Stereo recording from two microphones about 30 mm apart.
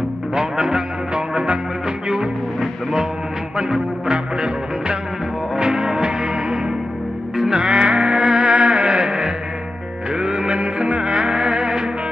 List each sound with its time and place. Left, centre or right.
0.3 s music: right
3.5 s music: right
7.6 s music: right
10.5 s music: right